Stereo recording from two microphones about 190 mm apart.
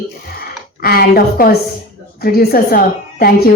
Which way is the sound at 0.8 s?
55° left (ahead or behind).